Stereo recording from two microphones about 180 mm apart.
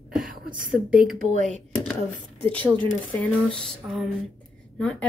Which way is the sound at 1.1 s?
45° right (ahead or behind).